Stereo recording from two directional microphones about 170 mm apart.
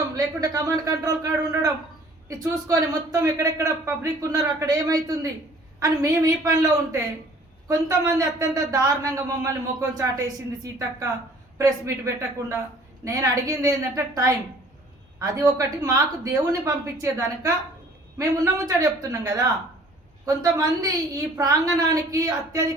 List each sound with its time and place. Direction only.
0.3 s a man's voice: 20° right (ahead or behind)
20.2 s a man's voice: 20° right (ahead or behind)